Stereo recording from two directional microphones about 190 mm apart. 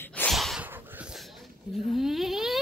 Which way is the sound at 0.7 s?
10° right (ahead or behind).